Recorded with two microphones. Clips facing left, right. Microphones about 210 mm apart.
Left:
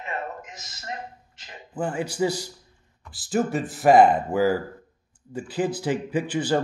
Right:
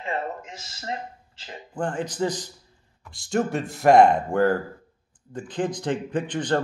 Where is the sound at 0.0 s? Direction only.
30° right (ahead or behind).